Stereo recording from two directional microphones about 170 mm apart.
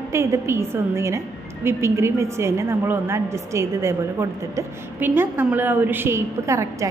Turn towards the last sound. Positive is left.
turn(degrees=-15)  # may be behind; listen again after turning